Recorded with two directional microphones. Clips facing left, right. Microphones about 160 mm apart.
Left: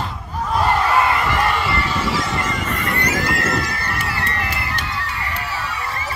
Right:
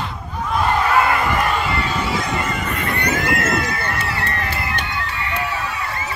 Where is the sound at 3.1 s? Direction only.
35° left (ahead or behind).